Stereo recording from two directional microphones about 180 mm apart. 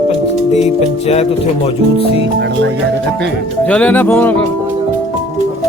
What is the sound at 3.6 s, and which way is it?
Speech, 10° left (ahead or behind).